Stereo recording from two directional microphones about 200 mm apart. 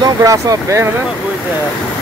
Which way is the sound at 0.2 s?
15° right (ahead or behind).